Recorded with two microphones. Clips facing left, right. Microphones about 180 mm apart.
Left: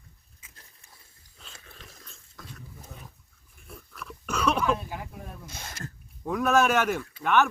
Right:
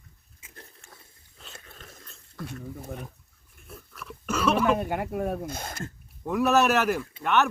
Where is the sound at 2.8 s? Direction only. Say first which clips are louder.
Right 10 dB; 60° right (ahead or behind).